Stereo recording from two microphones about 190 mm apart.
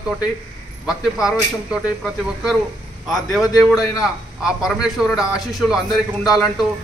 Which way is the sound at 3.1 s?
Centre (ahead or behind).